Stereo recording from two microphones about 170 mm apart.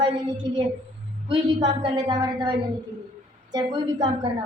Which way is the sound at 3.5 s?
25° right (ahead or behind).